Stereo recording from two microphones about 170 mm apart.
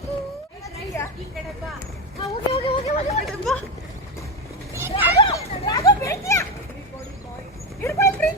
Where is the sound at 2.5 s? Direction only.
35° left (ahead or behind).